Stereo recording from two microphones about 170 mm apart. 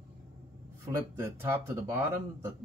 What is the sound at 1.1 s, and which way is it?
Speech, 15° right (ahead or behind).